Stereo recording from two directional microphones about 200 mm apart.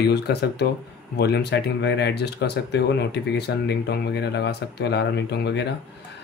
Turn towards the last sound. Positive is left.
turn(degrees=55)  # may be behind; listen again after turning